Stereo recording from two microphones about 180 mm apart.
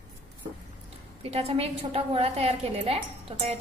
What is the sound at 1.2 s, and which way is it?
A woman's voice, 35° right (ahead or behind).